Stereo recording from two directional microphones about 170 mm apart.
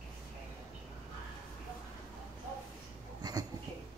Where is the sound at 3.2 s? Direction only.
25° right (ahead or behind).